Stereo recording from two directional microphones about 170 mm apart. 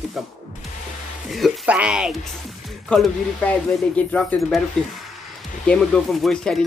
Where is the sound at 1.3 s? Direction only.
5° right (ahead or behind).